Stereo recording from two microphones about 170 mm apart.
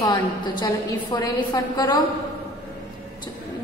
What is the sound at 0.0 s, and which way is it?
A woman's voice, 20° left (ahead or behind).